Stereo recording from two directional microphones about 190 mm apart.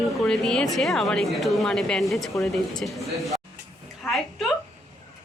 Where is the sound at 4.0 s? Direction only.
Centre (ahead or behind).